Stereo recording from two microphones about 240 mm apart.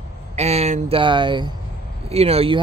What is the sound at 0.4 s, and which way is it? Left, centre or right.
Speech, right.